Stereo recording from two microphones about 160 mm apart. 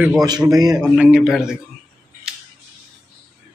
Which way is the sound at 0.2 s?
25° right (ahead or behind).